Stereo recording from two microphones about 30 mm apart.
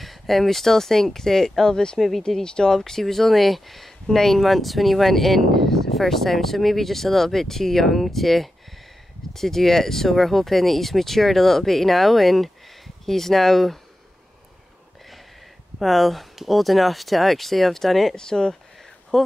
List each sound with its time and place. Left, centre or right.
0.0 s speech: centre
1.7 s speech: left
2.0 s speech: centre
2.4 s speech: left
2.7 s speech: centre
15.8 s speech: centre
18.1 s speech: left